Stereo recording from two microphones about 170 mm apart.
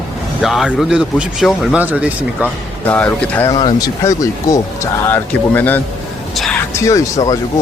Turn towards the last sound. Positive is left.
turn(degrees=20)  # may be behind; listen again after turning